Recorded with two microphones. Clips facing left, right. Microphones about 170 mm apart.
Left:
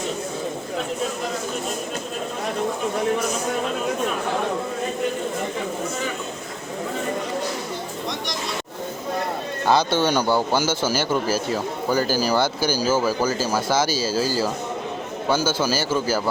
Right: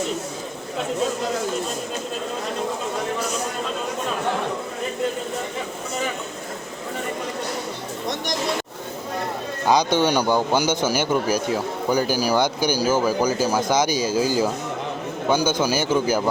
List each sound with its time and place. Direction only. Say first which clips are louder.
9.6 s speech: right 1 dB; 15° right (ahead or behind)